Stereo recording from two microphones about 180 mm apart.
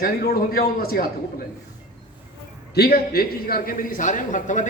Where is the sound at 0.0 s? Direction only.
60° left (ahead or behind).